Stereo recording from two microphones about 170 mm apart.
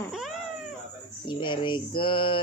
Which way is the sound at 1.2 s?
30° left (ahead or behind).